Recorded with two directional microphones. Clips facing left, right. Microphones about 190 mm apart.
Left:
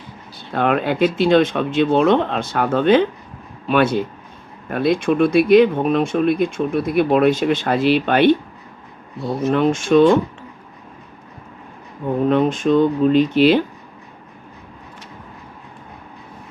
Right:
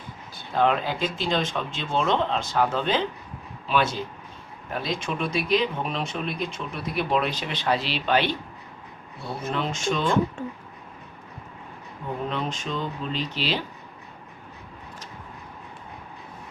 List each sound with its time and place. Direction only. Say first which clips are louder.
0.5 s speech: left 5 dB; 60° left (ahead or behind)
9.5 s speech: left 12 dB; 50° left (ahead or behind)
12.3 s speech: left 14 dB; 55° left (ahead or behind)